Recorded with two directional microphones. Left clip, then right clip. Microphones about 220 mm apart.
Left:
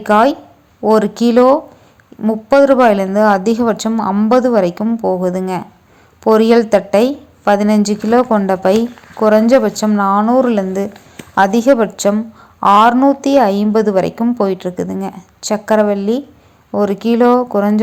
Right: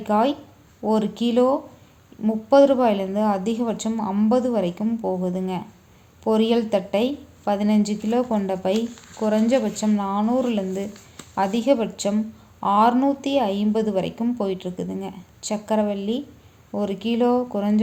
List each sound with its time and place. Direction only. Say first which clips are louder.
0.0 s speech: left 10 dB; 20° left (ahead or behind)